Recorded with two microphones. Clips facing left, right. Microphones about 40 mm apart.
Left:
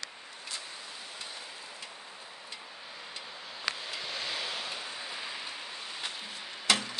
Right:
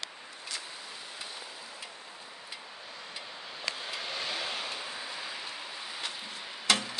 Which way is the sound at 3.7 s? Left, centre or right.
Centre.